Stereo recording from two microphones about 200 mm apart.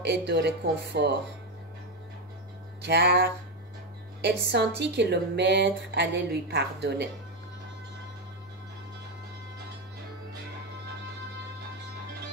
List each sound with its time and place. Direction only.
0.0 s speech: 60° right (ahead or behind)
2.8 s speech: 55° right (ahead or behind)